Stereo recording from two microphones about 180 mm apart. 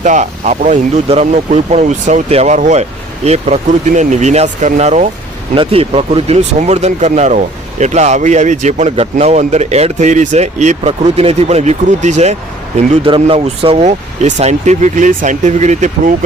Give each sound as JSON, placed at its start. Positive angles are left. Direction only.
{"t": 0.0, "sound": "speech", "side_deg": -40}